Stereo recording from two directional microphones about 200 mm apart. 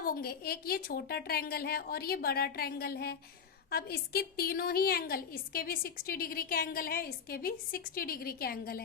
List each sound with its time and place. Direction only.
0.0 s a woman's voice: 50° left (ahead or behind)